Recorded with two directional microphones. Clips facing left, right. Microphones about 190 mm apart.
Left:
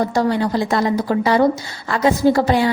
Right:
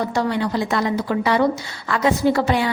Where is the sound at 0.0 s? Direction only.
40° left (ahead or behind).